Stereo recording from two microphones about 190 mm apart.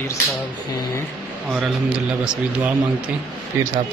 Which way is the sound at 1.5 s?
5° right (ahead or behind).